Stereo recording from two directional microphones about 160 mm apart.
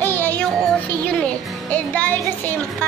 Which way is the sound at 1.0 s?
10° left (ahead or behind).